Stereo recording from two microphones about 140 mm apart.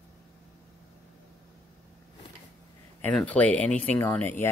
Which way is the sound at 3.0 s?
10° left (ahead or behind).